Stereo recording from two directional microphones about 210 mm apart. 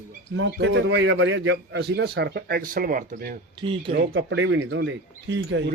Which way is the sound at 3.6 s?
25° right (ahead or behind).